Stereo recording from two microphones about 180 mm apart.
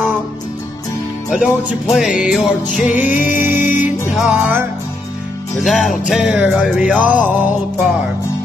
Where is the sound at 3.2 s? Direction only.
45° left (ahead or behind).